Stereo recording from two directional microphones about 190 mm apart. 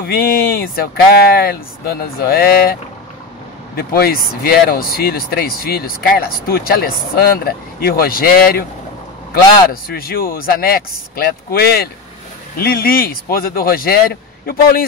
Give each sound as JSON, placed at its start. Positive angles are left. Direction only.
{"t": 0.0, "sound": "speech", "side_deg": 50}
{"t": 9.3, "sound": "speech", "side_deg": 50}